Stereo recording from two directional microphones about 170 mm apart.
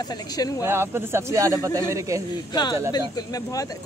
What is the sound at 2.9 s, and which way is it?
Speech, 20° left (ahead or behind).